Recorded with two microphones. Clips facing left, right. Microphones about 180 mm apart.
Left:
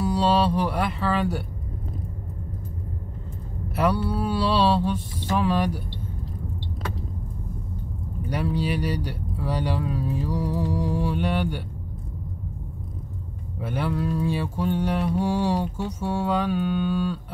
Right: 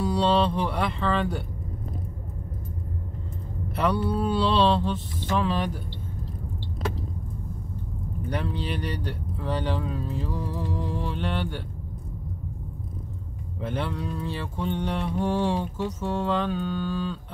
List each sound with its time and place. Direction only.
0.0 s mantra: 5° left (ahead or behind)
3.7 s mantra: 5° left (ahead or behind)
8.3 s speech: 10° left (ahead or behind)
13.6 s mantra: 10° left (ahead or behind)